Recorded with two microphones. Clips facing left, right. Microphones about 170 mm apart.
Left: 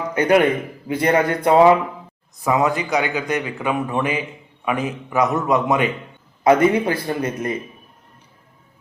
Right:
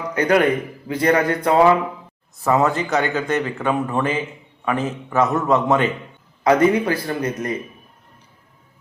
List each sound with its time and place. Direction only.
0.1 s a man's voice: 25° left (ahead or behind)
6.4 s speech: 25° left (ahead or behind)